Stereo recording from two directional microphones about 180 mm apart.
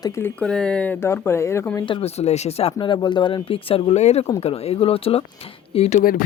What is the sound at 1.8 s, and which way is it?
Speech, 30° left (ahead or behind).